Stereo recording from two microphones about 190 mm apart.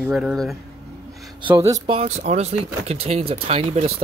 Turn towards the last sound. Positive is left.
turn(degrees=-30)  # may be behind; listen again after turning